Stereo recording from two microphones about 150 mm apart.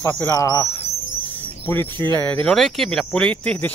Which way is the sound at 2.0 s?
15° left (ahead or behind).